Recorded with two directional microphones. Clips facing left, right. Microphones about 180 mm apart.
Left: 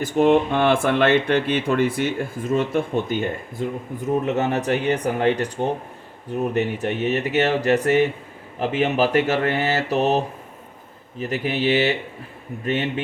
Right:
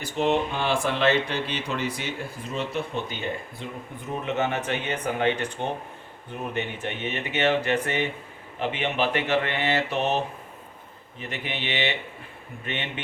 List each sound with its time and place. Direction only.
0.0 s speech: 50° left (ahead or behind)